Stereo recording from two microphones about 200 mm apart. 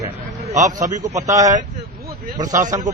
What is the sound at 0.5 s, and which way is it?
Speech, 35° right (ahead or behind).